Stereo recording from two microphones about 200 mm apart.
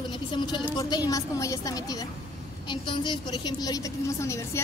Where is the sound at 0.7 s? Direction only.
20° left (ahead or behind).